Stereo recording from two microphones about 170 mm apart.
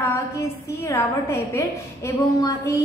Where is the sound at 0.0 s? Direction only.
15° left (ahead or behind).